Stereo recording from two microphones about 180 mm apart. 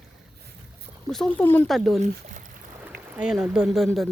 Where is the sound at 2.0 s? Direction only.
45° right (ahead or behind).